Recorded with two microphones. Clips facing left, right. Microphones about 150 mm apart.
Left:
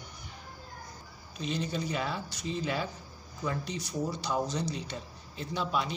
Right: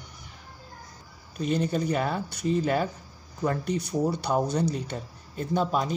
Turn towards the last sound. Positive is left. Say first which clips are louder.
# right 6 dB
turn(degrees=-45)  # may be behind; listen again after turning